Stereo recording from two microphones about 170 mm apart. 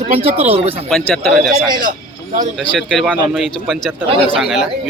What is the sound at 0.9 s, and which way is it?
Speech, centre (ahead or behind).